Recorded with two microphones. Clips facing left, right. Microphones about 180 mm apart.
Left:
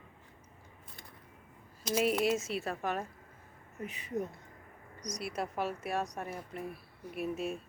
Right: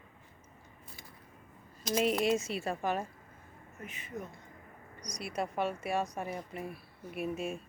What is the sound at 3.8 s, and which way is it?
Speech, 35° left (ahead or behind).